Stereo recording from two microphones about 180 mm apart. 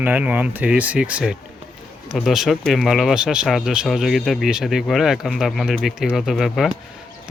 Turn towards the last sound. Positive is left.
turn(degrees=0)  # may be behind; listen again after turning